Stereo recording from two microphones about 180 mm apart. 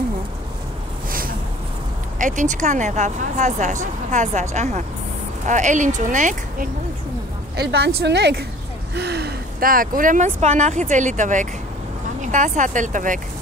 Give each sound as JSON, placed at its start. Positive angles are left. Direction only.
{"t": 2.1, "sound": "speech", "side_deg": -45}
{"t": 7.5, "sound": "a woman's voice", "side_deg": -65}